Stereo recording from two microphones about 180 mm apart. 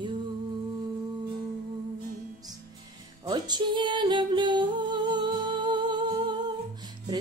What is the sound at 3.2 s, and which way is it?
Music, 25° right (ahead or behind).